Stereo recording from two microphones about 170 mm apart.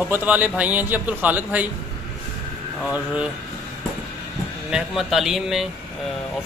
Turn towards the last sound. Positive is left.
turn(degrees=0)  # may be behind; listen again after turning